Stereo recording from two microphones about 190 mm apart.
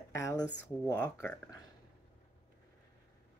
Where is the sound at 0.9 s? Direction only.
15° left (ahead or behind).